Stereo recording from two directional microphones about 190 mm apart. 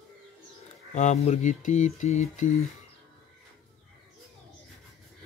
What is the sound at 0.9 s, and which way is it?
Speech, 35° left (ahead or behind).